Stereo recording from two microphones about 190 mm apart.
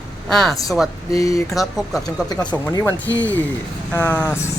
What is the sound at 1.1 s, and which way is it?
Speech, 15° left (ahead or behind).